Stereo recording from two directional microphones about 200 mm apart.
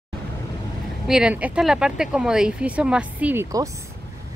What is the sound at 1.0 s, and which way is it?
Speech, 5° right (ahead or behind).